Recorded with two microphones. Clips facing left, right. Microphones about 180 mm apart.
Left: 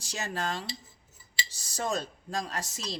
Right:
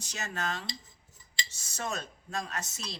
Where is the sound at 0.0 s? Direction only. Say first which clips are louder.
Left 3 dB; 35° left (ahead or behind).